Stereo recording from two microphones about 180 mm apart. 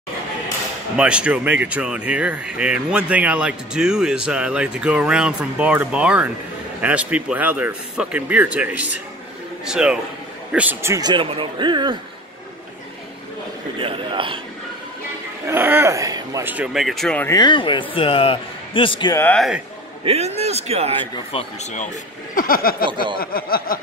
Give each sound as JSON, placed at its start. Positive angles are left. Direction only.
{"t": 0.9, "sound": "a man's voice", "side_deg": -5}
{"t": 13.7, "sound": "a man's voice", "side_deg": -30}
{"t": 15.4, "sound": "speech", "side_deg": -10}
{"t": 17.3, "sound": "a man's voice", "side_deg": 25}
{"t": 19.1, "sound": "speech", "side_deg": 10}
{"t": 20.1, "sound": "a man's voice", "side_deg": -35}
{"t": 21.3, "sound": "speech", "side_deg": 35}
{"t": 22.3, "sound": "a sound", "side_deg": 50}